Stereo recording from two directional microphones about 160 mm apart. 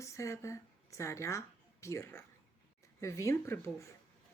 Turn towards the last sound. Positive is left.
turn(degrees=20)  # may be behind; listen again after turning